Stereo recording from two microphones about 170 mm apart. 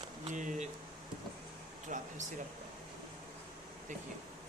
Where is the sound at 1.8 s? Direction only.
45° right (ahead or behind).